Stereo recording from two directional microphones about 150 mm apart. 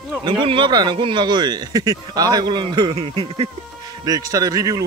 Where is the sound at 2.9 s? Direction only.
40° right (ahead or behind).